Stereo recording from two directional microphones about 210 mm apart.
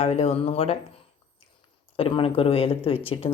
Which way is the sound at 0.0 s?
30° left (ahead or behind).